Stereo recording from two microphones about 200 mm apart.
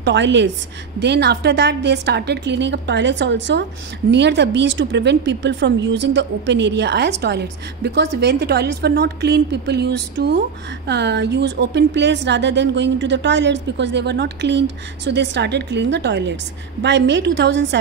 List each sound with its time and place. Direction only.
0.0 s speech: 60° right (ahead or behind)